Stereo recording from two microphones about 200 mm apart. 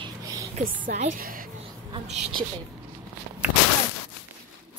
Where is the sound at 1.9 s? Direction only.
30° right (ahead or behind).